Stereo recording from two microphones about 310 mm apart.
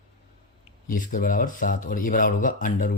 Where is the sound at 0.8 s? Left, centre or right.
Left.